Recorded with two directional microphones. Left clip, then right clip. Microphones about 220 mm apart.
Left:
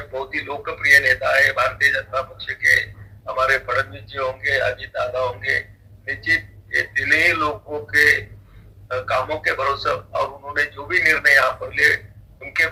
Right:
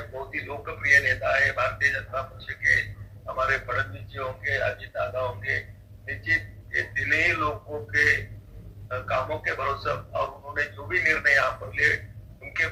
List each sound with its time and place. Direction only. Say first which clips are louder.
0.1 s a man's voice: left 8 dB; 35° left (ahead or behind)